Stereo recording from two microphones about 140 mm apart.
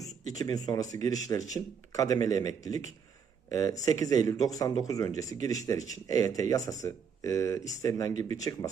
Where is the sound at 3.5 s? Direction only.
25° left (ahead or behind).